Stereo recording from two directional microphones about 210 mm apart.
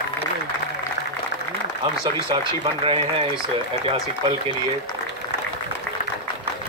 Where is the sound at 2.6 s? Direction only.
25° right (ahead or behind).